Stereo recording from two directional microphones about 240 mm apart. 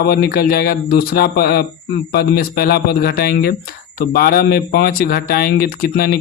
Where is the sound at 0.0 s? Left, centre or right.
Left.